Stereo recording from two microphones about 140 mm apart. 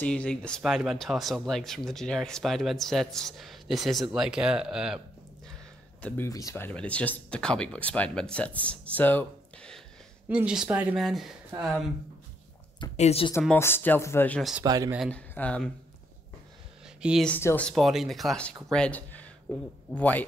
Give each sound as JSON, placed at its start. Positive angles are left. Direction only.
{"t": 0.0, "sound": "speech", "side_deg": 10}
{"t": 5.9, "sound": "a sound", "side_deg": 10}
{"t": 6.2, "sound": "speech", "side_deg": 20}
{"t": 10.2, "sound": "speech", "side_deg": -10}
{"t": 12.9, "sound": "speech", "side_deg": 50}
{"t": 13.6, "sound": "speech", "side_deg": 15}
{"t": 14.6, "sound": "speech", "side_deg": -25}
{"t": 15.0, "sound": "speech", "side_deg": 10}
{"t": 16.8, "sound": "a sound", "side_deg": -5}
{"t": 17.3, "sound": "speech", "side_deg": 15}
{"t": 17.6, "sound": "speech", "side_deg": 0}